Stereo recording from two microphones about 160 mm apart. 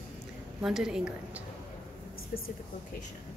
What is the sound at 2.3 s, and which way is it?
Speech, 70° left (ahead or behind).